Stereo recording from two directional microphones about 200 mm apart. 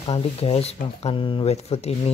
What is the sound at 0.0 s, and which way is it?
Speech, 30° left (ahead or behind).